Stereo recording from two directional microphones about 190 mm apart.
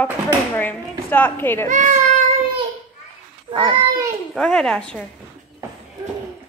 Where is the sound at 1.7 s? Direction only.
40° right (ahead or behind).